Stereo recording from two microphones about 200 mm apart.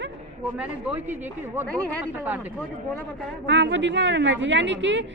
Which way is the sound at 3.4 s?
65° right (ahead or behind).